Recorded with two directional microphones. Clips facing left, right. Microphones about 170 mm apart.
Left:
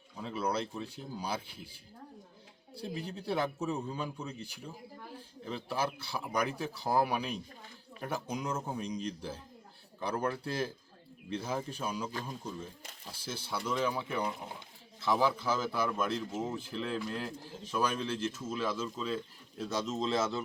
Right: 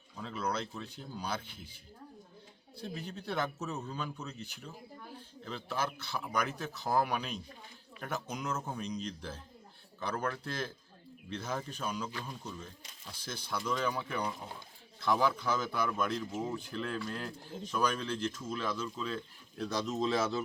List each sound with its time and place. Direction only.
0.2 s speech: 10° left (ahead or behind)
3.1 s speech: 10° left (ahead or behind)
5.5 s speech: 10° left (ahead or behind)